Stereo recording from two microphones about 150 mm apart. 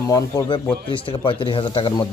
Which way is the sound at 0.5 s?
35° left (ahead or behind).